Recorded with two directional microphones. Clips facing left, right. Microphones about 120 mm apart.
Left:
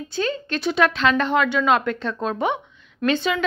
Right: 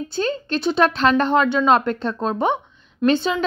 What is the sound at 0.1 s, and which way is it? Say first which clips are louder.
A woman's voice: right 1 dB; 35° right (ahead or behind).